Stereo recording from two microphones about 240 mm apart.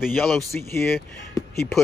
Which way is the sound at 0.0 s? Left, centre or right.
Centre.